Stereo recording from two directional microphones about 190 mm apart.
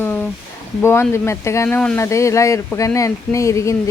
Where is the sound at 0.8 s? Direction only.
15° left (ahead or behind).